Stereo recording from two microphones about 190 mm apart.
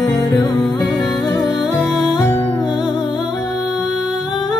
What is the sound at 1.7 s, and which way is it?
Music, 5° right (ahead or behind).